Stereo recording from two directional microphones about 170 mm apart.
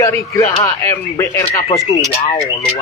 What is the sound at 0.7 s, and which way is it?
Speech, 15° left (ahead or behind).